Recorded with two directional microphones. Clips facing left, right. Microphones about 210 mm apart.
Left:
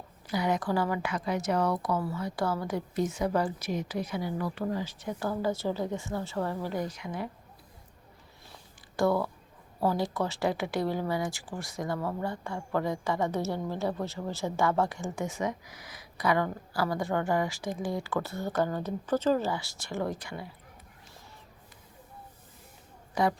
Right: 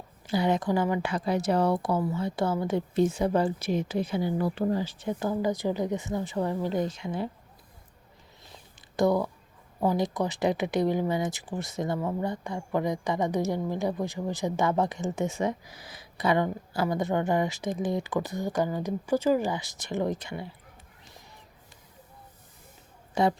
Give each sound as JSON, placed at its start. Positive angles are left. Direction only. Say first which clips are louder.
{"t": 0.3, "sound": "speech", "louder": "right 3 dB", "side_deg": -25}
{"t": 8.5, "sound": "a sound", "louder": "right 3 dB", "side_deg": -20}
{"t": 9.8, "sound": "speech", "louder": "right 2 dB", "side_deg": -15}
{"t": 23.2, "sound": "speech", "louder": "right 3 dB", "side_deg": -25}